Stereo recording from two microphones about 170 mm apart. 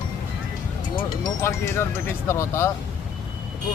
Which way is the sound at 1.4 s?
15° left (ahead or behind).